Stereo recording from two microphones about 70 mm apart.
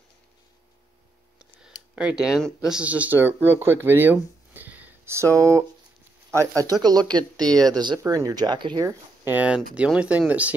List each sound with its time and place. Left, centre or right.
1.4 s a sound: centre
2.7 s speech: centre
5.0 s speech: right
7.5 s speech: right
8.1 s speech: right
9.2 s speech: right